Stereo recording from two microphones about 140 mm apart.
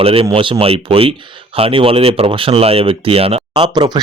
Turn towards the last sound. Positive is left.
turn(degrees=-30)  # may be behind; listen again after turning